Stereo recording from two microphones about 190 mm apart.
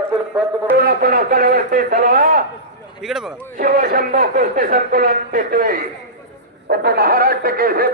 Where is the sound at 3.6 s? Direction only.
50° right (ahead or behind).